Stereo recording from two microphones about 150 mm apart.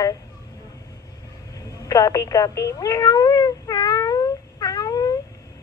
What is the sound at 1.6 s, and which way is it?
Cat, 20° left (ahead or behind).